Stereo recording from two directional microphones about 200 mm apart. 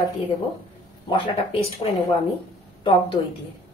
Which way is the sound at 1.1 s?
30° left (ahead or behind).